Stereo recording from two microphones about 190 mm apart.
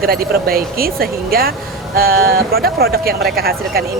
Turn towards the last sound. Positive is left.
turn(degrees=-55)  # may be behind; listen again after turning